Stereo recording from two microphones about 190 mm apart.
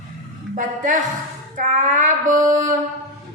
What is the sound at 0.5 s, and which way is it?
A woman's voice, 40° right (ahead or behind).